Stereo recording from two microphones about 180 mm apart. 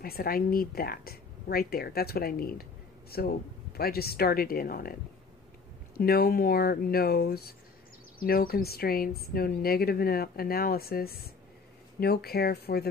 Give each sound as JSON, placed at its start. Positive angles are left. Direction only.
{"t": 0.0, "sound": "a woman's voice", "side_deg": 55}
{"t": 5.9, "sound": "a woman's voice", "side_deg": 60}